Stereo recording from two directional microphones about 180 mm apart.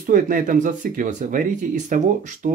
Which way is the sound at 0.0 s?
45° right (ahead or behind).